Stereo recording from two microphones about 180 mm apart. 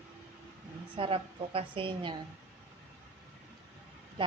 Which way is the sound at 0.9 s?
30° right (ahead or behind).